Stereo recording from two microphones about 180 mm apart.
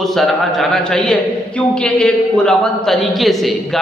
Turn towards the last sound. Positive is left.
turn(degrees=0)  # may be behind; listen again after turning